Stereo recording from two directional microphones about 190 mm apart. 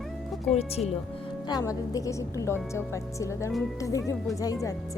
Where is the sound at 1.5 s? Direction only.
20° left (ahead or behind).